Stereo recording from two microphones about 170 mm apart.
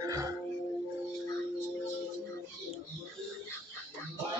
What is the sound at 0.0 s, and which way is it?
Music, 20° right (ahead or behind).